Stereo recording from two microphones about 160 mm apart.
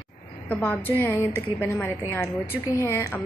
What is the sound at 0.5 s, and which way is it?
A woman's voice, 10° left (ahead or behind).